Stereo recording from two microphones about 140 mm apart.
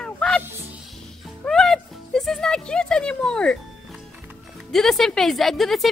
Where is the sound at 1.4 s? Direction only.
5° left (ahead or behind).